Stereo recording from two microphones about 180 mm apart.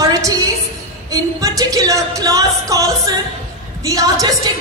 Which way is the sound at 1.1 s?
20° right (ahead or behind).